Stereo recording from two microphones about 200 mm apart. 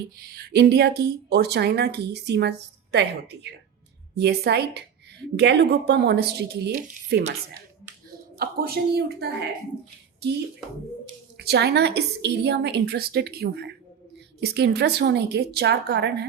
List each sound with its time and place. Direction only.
0.2 s a woman's voice: 55° right (ahead or behind)
4.1 s a woman's voice: 55° right (ahead or behind)
8.4 s speech: 50° right (ahead or behind)
10.2 s a woman's voice: 55° right (ahead or behind)